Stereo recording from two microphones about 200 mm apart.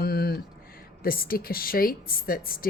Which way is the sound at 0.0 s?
50° left (ahead or behind).